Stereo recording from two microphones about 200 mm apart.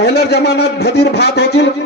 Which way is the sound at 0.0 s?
55° left (ahead or behind).